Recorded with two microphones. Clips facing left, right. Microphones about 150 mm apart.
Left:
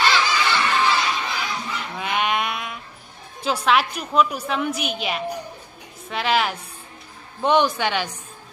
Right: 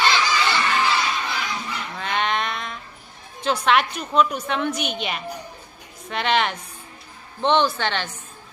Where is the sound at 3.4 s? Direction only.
5° left (ahead or behind).